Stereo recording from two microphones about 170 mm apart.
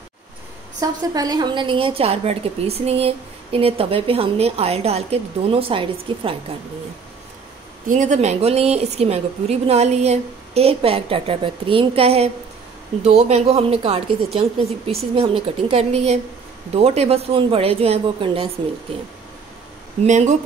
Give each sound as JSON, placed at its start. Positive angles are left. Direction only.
{"t": 0.7, "sound": "a woman's voice", "side_deg": -20}
{"t": 7.9, "sound": "a woman's voice", "side_deg": -45}
{"t": 20.1, "sound": "speech", "side_deg": -45}